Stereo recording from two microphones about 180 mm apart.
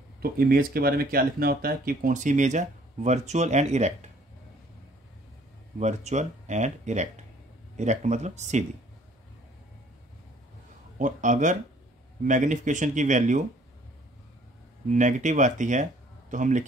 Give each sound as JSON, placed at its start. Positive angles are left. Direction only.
{"t": 0.2, "sound": "speech", "side_deg": -55}
{"t": 5.8, "sound": "speech", "side_deg": -40}
{"t": 11.0, "sound": "speech", "side_deg": -45}
{"t": 14.9, "sound": "speech", "side_deg": -45}